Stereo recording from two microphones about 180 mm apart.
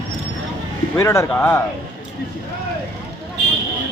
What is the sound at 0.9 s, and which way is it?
Speech, 15° left (ahead or behind).